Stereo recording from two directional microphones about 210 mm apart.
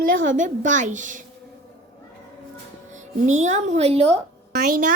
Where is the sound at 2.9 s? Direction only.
35° right (ahead or behind).